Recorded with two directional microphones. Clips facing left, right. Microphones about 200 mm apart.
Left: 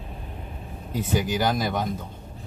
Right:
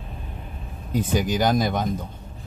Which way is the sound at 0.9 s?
15° right (ahead or behind).